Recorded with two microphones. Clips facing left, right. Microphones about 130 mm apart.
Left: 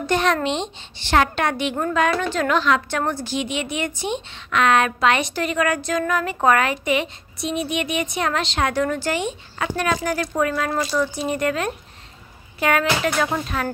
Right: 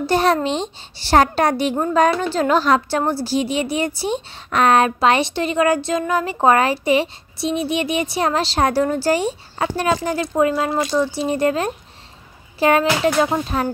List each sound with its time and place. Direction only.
0.0 s a woman's voice: 35° right (ahead or behind)